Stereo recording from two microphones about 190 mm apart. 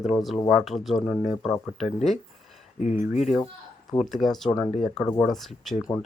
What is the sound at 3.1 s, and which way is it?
Speech, 40° left (ahead or behind).